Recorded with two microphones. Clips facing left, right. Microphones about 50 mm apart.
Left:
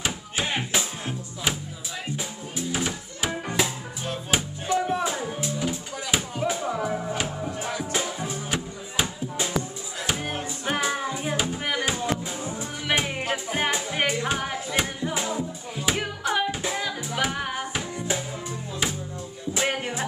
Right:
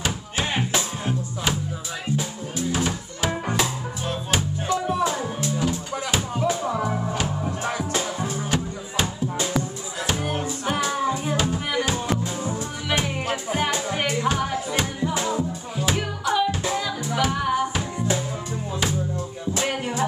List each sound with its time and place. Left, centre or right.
0.0 s music: centre
2.1 s music: centre
8.3 s music: centre
19.5 s music: centre